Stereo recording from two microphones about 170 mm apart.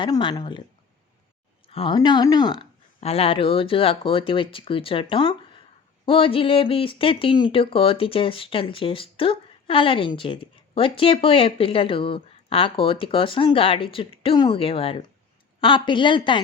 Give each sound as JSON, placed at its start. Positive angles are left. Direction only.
{"t": 0.0, "sound": "a woman's voice", "side_deg": 30}
{"t": 1.6, "sound": "a woman's voice", "side_deg": 30}